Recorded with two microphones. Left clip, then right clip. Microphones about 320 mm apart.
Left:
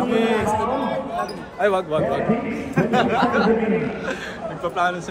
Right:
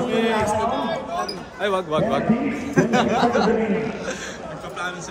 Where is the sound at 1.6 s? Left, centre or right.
Centre.